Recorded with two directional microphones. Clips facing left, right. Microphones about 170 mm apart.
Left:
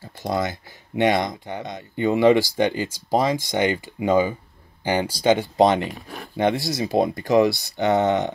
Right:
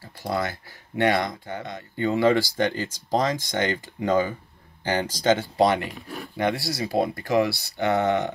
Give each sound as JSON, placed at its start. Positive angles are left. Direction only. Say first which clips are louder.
{"t": 0.0, "sound": "speech", "louder": "left 3 dB", "side_deg": 20}